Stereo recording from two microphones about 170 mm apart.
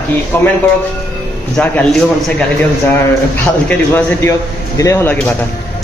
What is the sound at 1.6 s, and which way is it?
Speech, 10° left (ahead or behind).